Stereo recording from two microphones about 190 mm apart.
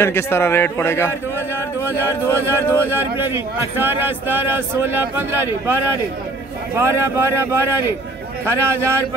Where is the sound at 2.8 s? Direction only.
10° right (ahead or behind).